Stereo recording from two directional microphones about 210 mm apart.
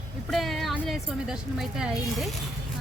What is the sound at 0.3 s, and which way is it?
A woman's voice, centre (ahead or behind).